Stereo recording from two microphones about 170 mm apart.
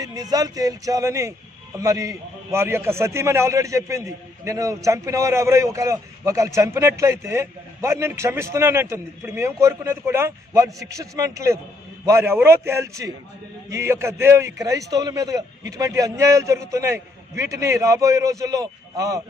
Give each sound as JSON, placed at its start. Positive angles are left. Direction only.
{"t": 0.0, "sound": "a man's voice", "side_deg": -20}